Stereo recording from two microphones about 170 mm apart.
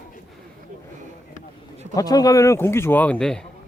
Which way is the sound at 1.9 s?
20° left (ahead or behind).